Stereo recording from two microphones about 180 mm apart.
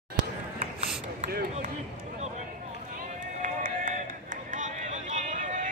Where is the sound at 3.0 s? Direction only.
50° right (ahead or behind).